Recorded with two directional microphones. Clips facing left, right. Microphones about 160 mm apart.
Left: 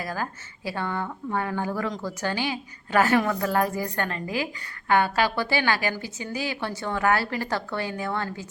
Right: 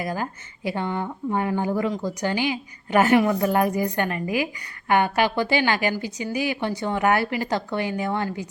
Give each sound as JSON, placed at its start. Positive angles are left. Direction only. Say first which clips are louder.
{"t": 0.0, "sound": "speech", "louder": "right 3 dB", "side_deg": -20}